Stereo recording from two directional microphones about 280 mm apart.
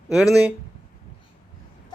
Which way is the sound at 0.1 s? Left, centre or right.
Centre.